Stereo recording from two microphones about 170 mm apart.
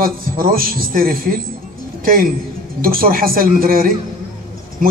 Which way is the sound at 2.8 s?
60° right (ahead or behind).